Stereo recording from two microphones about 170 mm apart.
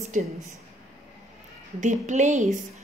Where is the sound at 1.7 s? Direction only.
45° right (ahead or behind).